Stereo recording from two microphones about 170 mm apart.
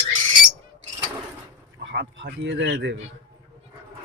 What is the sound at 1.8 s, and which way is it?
A man's voice, 85° right.